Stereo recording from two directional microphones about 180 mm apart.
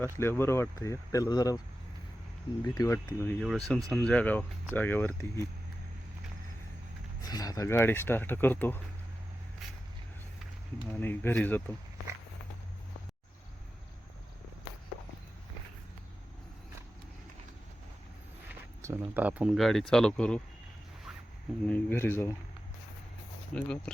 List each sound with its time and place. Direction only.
0.0 s speech: 15° left (ahead or behind)
7.2 s speech: 20° left (ahead or behind)
10.9 s speech: 10° left (ahead or behind)
18.8 s speech: 15° right (ahead or behind); by 20.4 s 5° left (ahead or behind)
21.7 s speech: 10° left (ahead or behind)
23.6 s speech: 5° left (ahead or behind)